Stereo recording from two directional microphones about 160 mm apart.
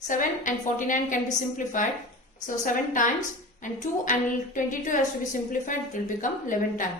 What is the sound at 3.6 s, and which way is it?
A woman's voice, 55° left (ahead or behind).